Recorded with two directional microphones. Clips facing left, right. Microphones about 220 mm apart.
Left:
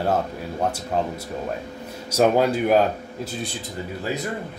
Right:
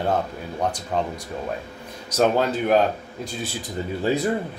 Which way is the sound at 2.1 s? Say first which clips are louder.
Left 2 dB; 10° left (ahead or behind).